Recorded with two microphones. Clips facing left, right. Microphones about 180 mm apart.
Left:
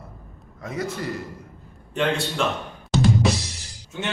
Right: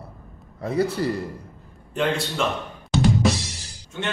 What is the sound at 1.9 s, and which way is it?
Speech, centre (ahead or behind).